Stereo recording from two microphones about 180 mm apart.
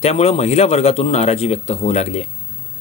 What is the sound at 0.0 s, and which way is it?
Speech, 35° left (ahead or behind).